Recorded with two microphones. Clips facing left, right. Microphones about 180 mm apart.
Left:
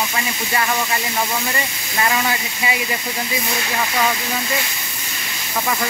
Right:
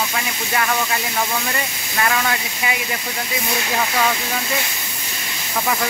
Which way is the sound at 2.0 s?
10° left (ahead or behind).